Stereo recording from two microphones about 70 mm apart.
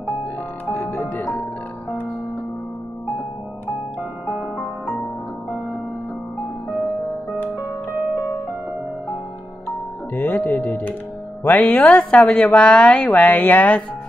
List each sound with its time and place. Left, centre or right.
0.7 s music: left
4.4 s music: centre
10.1 s music: left
11.4 s a woman's voice: left